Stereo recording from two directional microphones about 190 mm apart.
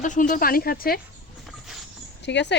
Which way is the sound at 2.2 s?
65° left (ahead or behind).